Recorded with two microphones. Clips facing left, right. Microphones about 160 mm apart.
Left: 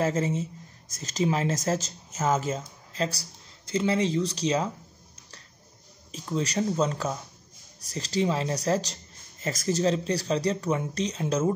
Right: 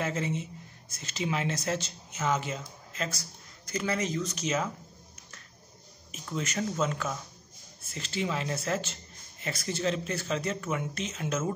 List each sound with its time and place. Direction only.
0.0 s speech: 40° left (ahead or behind)
6.1 s speech: 35° left (ahead or behind)